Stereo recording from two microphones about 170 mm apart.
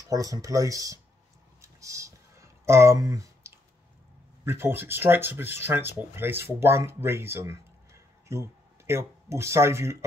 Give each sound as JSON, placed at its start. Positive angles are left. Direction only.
{"t": 0.0, "sound": "speech", "side_deg": -20}
{"t": 1.6, "sound": "a sound", "side_deg": -20}
{"t": 4.5, "sound": "speech", "side_deg": -15}